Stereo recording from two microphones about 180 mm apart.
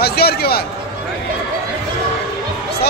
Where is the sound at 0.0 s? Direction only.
60° left (ahead or behind).